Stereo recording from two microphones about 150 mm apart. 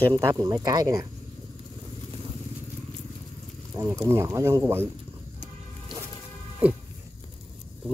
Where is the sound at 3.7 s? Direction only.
15° right (ahead or behind).